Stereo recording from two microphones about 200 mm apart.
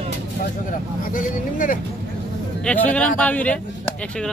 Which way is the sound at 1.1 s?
45° left (ahead or behind).